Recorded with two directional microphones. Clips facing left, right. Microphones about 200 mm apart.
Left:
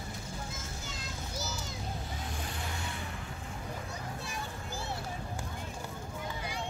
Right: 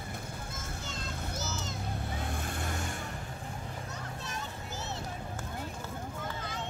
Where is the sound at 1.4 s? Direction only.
10° left (ahead or behind).